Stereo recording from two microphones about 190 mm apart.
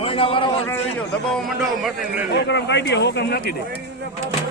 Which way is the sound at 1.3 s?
Centre (ahead or behind).